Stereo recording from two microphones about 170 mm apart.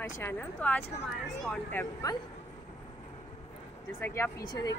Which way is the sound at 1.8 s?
20° left (ahead or behind).